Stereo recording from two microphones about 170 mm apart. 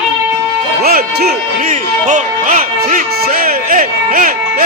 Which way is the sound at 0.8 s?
65° right (ahead or behind).